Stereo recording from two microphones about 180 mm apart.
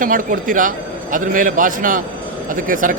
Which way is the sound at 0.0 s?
50° right (ahead or behind).